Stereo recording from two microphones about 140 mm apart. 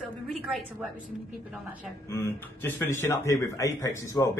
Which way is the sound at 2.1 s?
20° left (ahead or behind).